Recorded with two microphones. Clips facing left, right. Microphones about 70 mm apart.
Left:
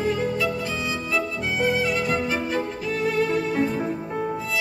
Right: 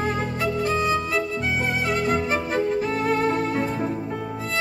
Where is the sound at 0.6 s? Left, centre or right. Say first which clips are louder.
Right 6 dB; right.